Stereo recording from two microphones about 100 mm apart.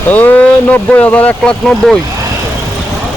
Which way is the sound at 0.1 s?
15° left (ahead or behind).